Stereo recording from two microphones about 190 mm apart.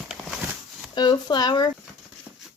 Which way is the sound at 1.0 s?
20° left (ahead or behind).